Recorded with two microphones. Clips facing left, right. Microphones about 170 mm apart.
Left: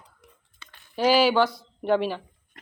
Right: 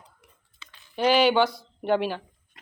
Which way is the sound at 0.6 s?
55° left (ahead or behind).